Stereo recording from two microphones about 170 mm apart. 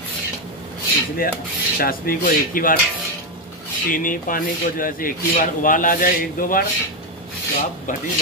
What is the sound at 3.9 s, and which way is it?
Speech, 55° left (ahead or behind).